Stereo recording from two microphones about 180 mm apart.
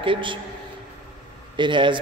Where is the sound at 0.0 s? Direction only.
30° right (ahead or behind).